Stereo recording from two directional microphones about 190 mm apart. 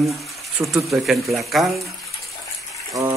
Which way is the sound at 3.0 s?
15° right (ahead or behind).